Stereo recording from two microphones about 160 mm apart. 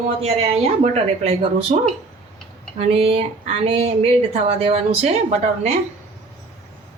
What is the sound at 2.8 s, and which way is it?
Speech, 40° right (ahead or behind).